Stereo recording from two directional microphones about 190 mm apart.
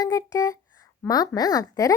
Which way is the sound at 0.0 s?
20° left (ahead or behind).